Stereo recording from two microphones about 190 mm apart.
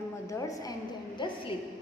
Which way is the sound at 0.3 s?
20° left (ahead or behind).